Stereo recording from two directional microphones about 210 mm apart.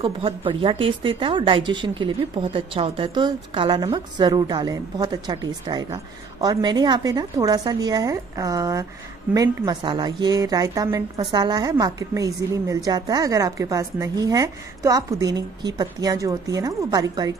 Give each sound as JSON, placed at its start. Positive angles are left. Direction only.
{"t": 0.0, "sound": "a woman's voice", "side_deg": -25}